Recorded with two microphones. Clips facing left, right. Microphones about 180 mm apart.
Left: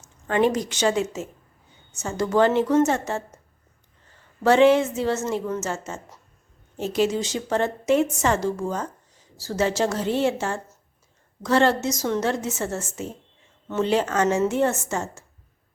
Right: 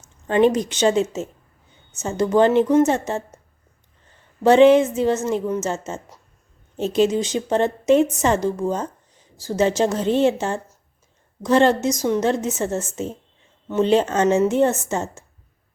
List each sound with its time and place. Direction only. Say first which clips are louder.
0.3 s a woman's voice: right 4 dB; 20° right (ahead or behind)
4.4 s a woman's voice: right 4 dB; 20° right (ahead or behind)